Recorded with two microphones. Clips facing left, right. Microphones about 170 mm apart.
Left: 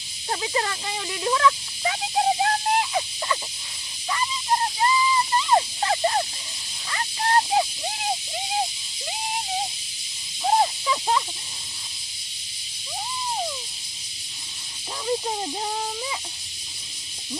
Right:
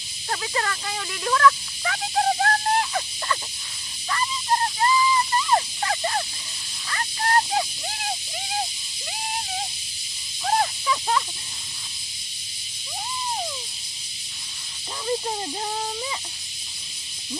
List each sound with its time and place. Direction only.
0.3 s speech: 20° left (ahead or behind)
4.1 s fowl: 15° left (ahead or behind)
6.9 s a sound: 20° left (ahead or behind)
10.4 s snake: 20° left (ahead or behind)